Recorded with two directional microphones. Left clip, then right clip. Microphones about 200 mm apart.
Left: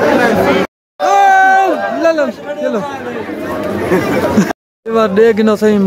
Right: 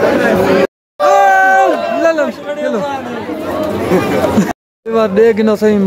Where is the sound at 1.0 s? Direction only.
5° left (ahead or behind).